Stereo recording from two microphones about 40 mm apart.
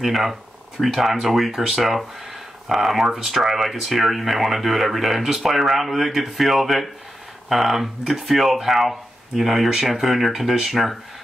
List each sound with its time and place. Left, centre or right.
0.0 s speech: centre
3.3 s speech: centre